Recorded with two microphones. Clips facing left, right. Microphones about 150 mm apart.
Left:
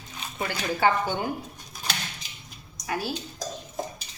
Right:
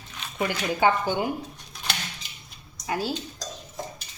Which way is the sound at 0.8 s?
15° right (ahead or behind).